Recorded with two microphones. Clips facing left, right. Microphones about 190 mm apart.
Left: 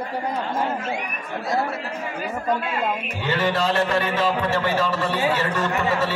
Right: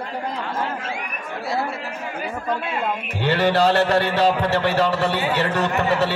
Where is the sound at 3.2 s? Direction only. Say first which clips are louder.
Right 5 dB; 65° right (ahead or behind).